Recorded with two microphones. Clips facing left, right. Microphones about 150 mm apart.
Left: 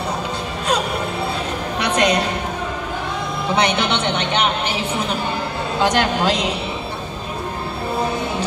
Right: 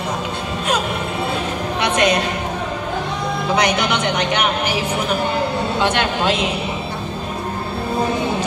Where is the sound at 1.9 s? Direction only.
35° left (ahead or behind).